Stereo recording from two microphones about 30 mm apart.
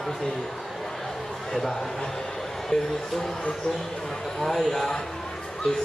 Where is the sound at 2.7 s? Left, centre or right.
Centre.